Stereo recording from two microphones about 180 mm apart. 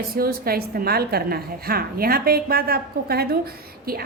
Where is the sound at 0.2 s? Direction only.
55° right (ahead or behind).